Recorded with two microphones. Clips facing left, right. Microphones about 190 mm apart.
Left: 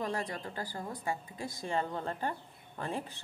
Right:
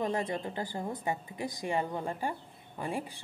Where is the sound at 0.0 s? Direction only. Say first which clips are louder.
Right 4 dB; 20° right (ahead or behind).